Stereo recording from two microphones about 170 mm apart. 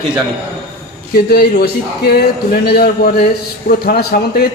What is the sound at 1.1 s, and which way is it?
A man's voice, 65° left (ahead or behind).